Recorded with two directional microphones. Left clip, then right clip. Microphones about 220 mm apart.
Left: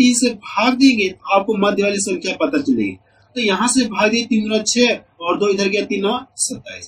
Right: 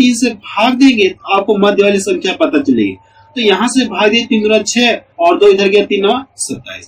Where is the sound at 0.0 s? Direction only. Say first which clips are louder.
Right 3 dB; 20° left (ahead or behind).